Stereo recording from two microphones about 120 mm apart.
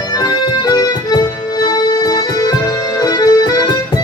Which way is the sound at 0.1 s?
35° left (ahead or behind).